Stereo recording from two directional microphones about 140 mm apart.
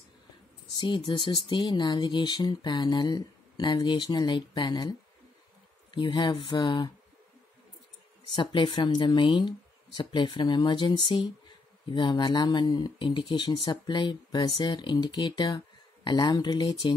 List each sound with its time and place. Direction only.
0.7 s speech: 35° left (ahead or behind)
8.4 s speech: 35° left (ahead or behind)